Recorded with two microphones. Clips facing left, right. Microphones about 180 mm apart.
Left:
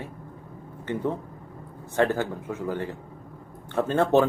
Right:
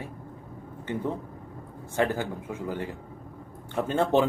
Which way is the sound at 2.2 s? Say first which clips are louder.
Left 3 dB; 15° right (ahead or behind).